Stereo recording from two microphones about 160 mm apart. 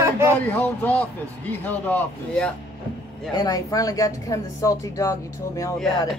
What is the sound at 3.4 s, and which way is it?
Speech, 20° left (ahead or behind).